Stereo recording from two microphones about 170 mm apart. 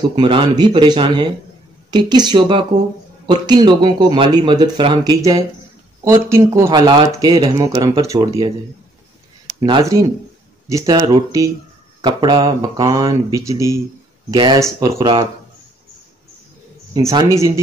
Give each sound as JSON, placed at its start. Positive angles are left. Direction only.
{"t": 0.1, "sound": "speech", "side_deg": -30}
{"t": 9.6, "sound": "speech", "side_deg": -20}
{"t": 17.1, "sound": "speech", "side_deg": -20}